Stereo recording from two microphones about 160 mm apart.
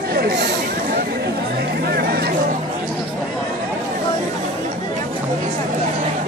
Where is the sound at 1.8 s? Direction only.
75° right (ahead or behind).